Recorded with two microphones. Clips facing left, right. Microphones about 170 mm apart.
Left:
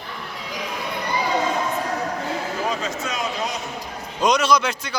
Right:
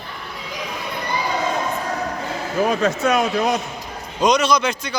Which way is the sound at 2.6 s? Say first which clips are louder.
Right 7 dB; 60° right (ahead or behind).